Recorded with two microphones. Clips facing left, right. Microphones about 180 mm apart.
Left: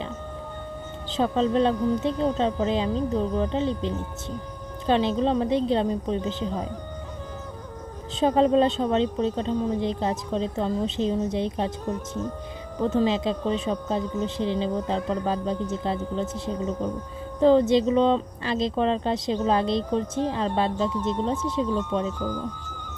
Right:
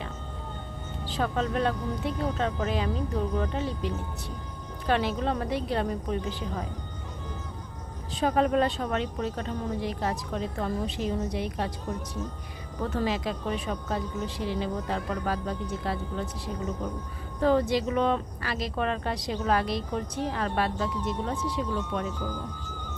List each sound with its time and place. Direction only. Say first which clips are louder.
1.1 s speech: left 6 dB; 25° left (ahead or behind)
8.2 s speech: left 5 dB; 25° left (ahead or behind)
12.8 s speech: left 6 dB; 20° left (ahead or behind)